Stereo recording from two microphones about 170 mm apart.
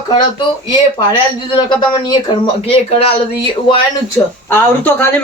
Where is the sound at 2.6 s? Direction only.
35° left (ahead or behind).